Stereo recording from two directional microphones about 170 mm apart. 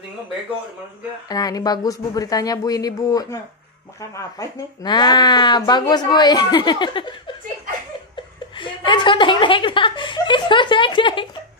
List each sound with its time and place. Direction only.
1.3 s speech: 20° left (ahead or behind)
8.5 s speech: 30° left (ahead or behind)